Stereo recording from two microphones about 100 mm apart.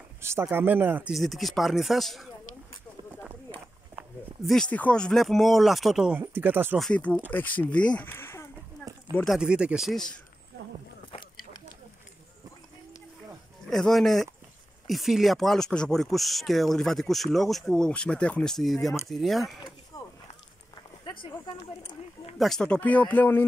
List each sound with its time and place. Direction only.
0.2 s speech: 25° right (ahead or behind)
1.1 s speech: centre (ahead or behind)
4.6 s speech: 15° left (ahead or behind); by 6.1 s 5° right (ahead or behind)
6.1 s speech: 20° right (ahead or behind)
6.8 s speech: 10° left (ahead or behind)
8.1 s a sound: 25° left (ahead or behind)
9.4 s speech: 10° right (ahead or behind)
13.7 s speech: 5° left (ahead or behind)
19.9 s a sound: 35° left (ahead or behind)
21.0 s a sound: 55° left (ahead or behind)
22.4 s speech: 5° left (ahead or behind)
22.8 s speech: 15° left (ahead or behind)